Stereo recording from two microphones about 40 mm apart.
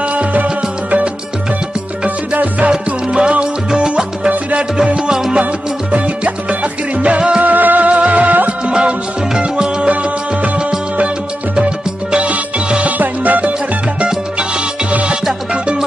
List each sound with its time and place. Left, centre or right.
0.1 s music: right
2.0 s music: right
2.7 s music: right
5.4 s music: right
7.4 s music: right
11.6 s music: right
14.9 s music: right